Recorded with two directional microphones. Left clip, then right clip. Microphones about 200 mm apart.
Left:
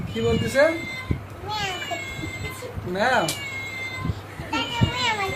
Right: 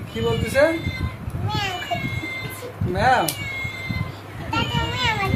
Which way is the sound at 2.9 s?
Centre (ahead or behind).